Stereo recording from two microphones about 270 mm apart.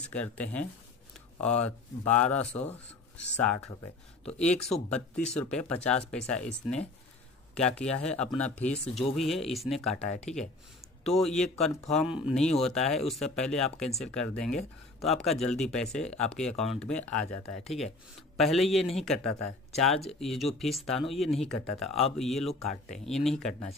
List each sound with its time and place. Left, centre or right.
0.1 s speech: centre
11.1 s speech: centre
17.6 s speech: left
18.4 s speech: centre